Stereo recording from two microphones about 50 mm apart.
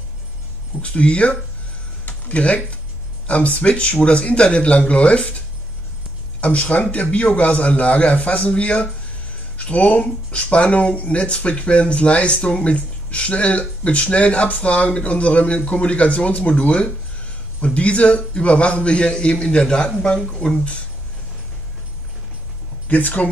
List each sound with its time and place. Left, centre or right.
0.8 s speech: left
2.0 s a sound: left
3.3 s speech: left
6.4 s speech: left
22.8 s speech: left